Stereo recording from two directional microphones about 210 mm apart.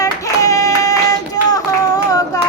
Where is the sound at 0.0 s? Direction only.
15° left (ahead or behind).